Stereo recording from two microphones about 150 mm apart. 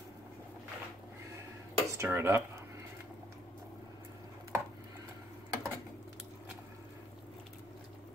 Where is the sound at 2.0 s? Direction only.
15° right (ahead or behind).